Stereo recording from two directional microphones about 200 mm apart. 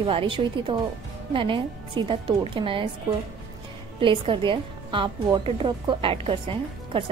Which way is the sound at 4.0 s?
25° right (ahead or behind).